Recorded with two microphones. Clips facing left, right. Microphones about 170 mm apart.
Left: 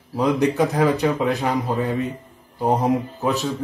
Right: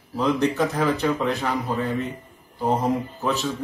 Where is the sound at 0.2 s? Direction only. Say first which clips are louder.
Left 3 dB; 15° left (ahead or behind).